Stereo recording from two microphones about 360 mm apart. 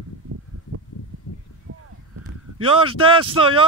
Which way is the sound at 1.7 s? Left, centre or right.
Right.